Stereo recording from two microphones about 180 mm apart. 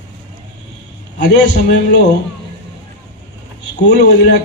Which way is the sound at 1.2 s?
70° left (ahead or behind).